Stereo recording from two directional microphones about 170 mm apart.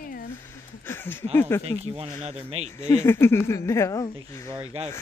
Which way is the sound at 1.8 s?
35° right (ahead or behind).